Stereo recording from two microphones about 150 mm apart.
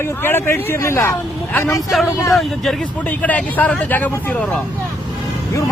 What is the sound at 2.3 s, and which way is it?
A man's voice, centre (ahead or behind).